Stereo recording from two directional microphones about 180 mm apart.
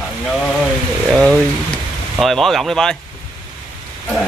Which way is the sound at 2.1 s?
Centre (ahead or behind).